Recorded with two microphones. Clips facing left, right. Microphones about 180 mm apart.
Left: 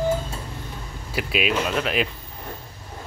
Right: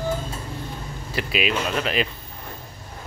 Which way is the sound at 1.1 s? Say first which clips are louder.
Left 1 dB; 5° left (ahead or behind).